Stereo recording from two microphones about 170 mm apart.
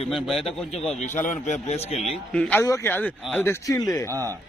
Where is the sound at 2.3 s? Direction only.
5° left (ahead or behind).